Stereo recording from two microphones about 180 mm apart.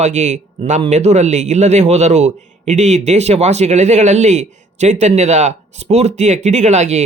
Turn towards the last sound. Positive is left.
turn(degrees=-40)  # may be behind; listen again after turning